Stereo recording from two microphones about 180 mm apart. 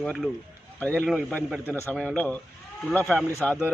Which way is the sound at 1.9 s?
Centre (ahead or behind).